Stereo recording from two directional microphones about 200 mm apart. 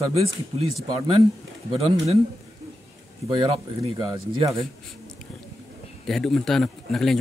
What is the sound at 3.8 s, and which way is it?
Speech, 25° right (ahead or behind).